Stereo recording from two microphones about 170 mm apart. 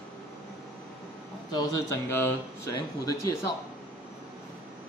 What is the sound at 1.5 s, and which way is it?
Speech, 15° left (ahead or behind).